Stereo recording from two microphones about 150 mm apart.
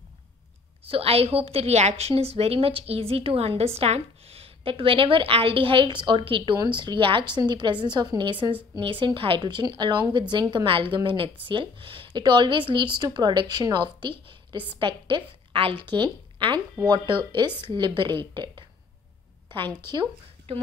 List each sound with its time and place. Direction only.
0.8 s a woman's voice: 40° right (ahead or behind)